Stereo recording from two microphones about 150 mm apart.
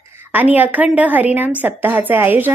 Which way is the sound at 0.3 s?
10° right (ahead or behind).